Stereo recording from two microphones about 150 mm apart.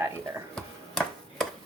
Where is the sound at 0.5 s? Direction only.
5° left (ahead or behind).